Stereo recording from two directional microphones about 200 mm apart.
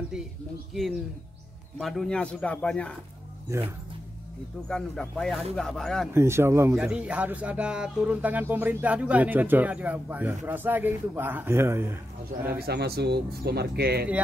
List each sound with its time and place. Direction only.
1.8 s speech: centre (ahead or behind)
4.6 s speech: 5° left (ahead or behind)
6.1 s speech: 10° right (ahead or behind)
12.4 s speech: 50° right (ahead or behind)